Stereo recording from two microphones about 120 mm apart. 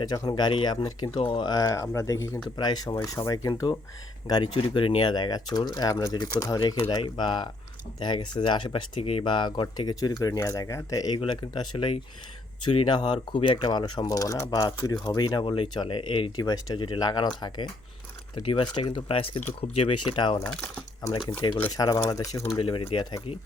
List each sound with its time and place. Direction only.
0.0 s speech: 35° left (ahead or behind)
9.0 s speech: 55° left (ahead or behind)
20.4 s speech: 10° left (ahead or behind)
21.4 s speech: 40° left (ahead or behind)
22.5 s speech: 45° left (ahead or behind)